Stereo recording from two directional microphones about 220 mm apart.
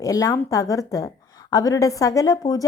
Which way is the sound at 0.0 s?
15° left (ahead or behind).